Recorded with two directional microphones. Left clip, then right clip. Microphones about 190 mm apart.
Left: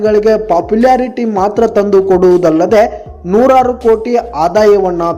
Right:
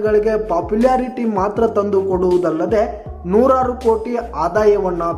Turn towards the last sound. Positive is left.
turn(degrees=25)  # may be behind; listen again after turning